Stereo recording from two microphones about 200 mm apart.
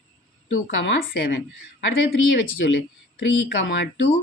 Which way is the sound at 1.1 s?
50° left (ahead or behind).